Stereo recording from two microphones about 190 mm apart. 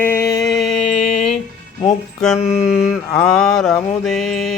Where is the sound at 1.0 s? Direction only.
35° left (ahead or behind).